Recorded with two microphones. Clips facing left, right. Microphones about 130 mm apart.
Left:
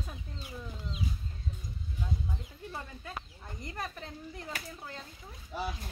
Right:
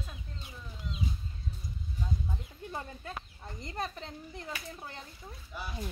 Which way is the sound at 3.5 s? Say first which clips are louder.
Right 2 dB; 25° right (ahead or behind).